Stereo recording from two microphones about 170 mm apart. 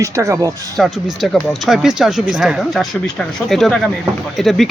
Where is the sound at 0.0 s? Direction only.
20° right (ahead or behind).